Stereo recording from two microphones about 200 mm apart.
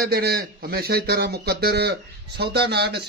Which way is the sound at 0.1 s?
50° right (ahead or behind).